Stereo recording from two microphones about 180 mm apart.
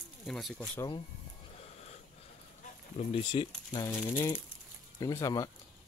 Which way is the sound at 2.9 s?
30° left (ahead or behind).